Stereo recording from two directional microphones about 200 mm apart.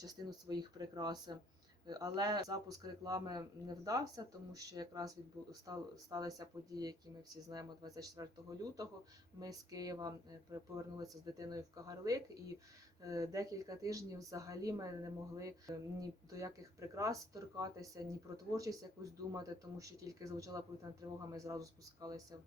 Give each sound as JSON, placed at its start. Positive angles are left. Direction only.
{"t": 0.0, "sound": "speech", "side_deg": -20}